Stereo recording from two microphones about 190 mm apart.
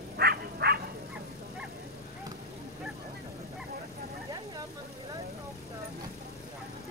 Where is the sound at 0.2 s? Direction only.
55° right (ahead or behind).